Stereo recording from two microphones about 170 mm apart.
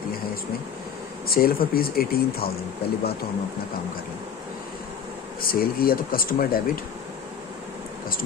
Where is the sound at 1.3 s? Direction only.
60° left (ahead or behind).